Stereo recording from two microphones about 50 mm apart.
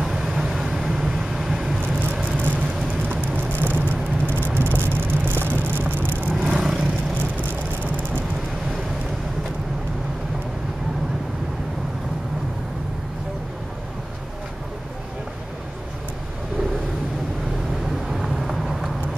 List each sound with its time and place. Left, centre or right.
0.0 s vehicle: centre
2.3 s vehicle: right
6.4 s vehicle: centre
18.1 s vehicle: centre